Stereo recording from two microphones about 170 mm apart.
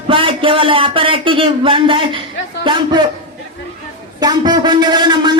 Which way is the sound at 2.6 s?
25° right (ahead or behind).